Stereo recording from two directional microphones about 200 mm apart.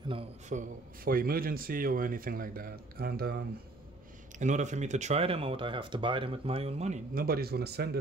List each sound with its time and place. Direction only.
0.1 s a man's voice: 35° right (ahead or behind)
4.4 s speech: 35° right (ahead or behind)
7.2 s a man's voice: 50° right (ahead or behind)